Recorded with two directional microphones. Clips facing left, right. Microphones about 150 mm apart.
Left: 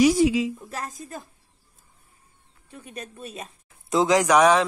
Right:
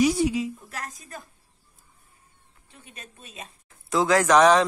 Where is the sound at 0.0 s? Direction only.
90° left.